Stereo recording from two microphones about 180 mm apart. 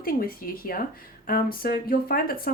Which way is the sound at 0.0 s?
55° left (ahead or behind).